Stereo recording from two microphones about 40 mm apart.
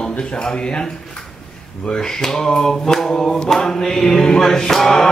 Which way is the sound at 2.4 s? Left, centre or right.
Centre.